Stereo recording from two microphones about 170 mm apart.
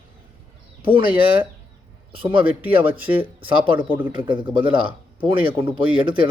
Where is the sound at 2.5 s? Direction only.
10° right (ahead or behind).